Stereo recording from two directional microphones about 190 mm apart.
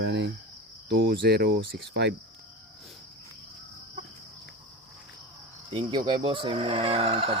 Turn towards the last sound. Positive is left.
turn(degrees=-30)  # may be behind; listen again after turning